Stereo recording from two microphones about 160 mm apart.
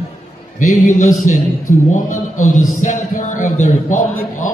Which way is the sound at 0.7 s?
55° left (ahead or behind).